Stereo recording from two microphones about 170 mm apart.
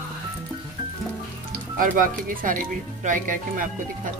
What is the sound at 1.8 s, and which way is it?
Speech, 55° right (ahead or behind).